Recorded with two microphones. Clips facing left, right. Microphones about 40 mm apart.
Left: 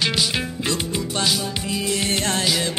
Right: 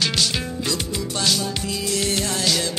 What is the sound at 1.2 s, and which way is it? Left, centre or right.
Music, centre.